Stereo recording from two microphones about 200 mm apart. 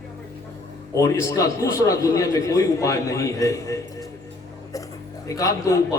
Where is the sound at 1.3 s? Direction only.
15° left (ahead or behind).